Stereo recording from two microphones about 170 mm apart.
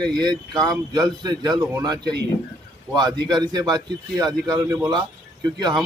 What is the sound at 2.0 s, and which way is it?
Speech, 80° right.